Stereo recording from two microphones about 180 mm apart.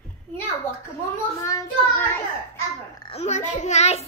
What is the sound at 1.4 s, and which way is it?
Speech, 20° left (ahead or behind).